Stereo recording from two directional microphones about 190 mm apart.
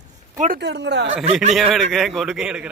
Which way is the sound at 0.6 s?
60° right (ahead or behind).